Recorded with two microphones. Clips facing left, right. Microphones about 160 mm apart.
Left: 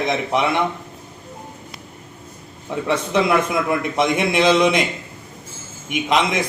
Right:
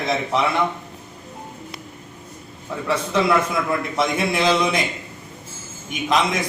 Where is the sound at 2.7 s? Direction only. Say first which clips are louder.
Left 2 dB; 20° left (ahead or behind).